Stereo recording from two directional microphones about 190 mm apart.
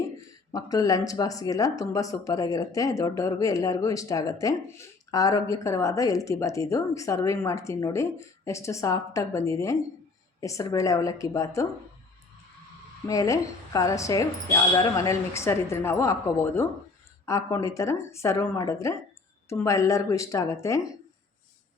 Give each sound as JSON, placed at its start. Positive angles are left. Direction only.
{"t": 0.5, "sound": "speech", "side_deg": 20}
{"t": 13.1, "sound": "speech", "side_deg": 15}